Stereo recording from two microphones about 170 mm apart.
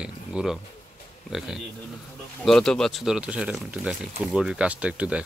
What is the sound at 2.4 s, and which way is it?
Speech, 5° left (ahead or behind).